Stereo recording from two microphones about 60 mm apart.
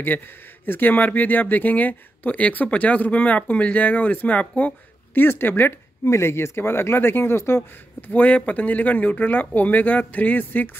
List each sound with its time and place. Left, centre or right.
0.7 s speech: left
5.1 s speech: left
6.0 s speech: left
8.1 s speech: left